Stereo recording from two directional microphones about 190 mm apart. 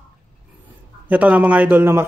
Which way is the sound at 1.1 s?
10° right (ahead or behind).